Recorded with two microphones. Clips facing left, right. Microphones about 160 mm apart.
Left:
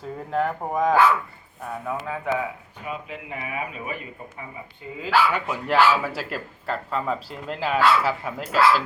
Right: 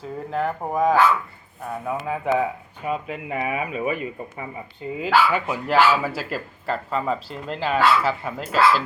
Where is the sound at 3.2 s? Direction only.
70° right (ahead or behind).